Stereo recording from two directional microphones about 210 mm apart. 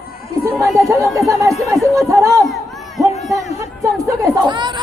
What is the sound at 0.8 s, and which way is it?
Chatter, 15° right (ahead or behind).